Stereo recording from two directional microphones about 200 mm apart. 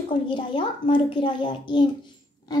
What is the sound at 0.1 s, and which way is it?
A woman's voice, 25° left (ahead or behind).